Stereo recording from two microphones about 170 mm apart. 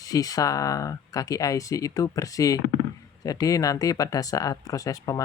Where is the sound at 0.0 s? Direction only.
20° left (ahead or behind).